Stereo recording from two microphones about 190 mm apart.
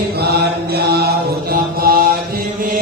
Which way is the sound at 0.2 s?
60° right (ahead or behind).